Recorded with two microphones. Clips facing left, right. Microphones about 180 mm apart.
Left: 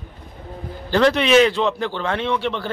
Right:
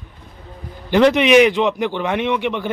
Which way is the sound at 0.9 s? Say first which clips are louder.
Right 3 dB; 15° right (ahead or behind).